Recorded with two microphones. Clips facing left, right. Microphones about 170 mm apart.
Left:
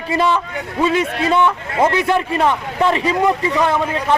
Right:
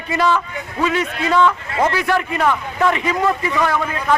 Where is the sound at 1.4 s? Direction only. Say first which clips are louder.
Right 1 dB; 20° left (ahead or behind).